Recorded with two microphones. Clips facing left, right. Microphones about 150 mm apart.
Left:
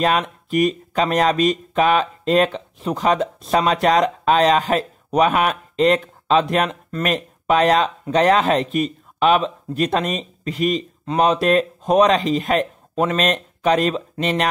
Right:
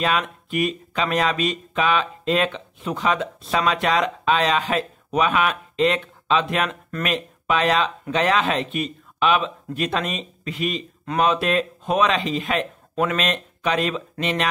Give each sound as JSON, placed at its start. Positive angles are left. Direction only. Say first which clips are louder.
{"t": 0.0, "sound": "speech", "louder": "left 4 dB", "side_deg": 40}